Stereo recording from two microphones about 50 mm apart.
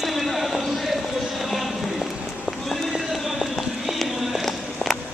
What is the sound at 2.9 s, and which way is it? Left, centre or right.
Run, centre.